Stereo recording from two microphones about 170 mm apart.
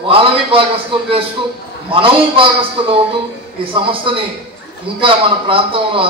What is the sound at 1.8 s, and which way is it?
A man's voice, 30° right (ahead or behind).